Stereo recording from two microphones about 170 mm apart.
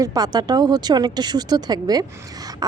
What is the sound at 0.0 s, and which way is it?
Speech, 20° right (ahead or behind).